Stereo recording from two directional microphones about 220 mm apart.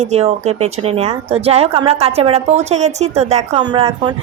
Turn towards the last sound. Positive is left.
turn(degrees=-20)  # may be behind; listen again after turning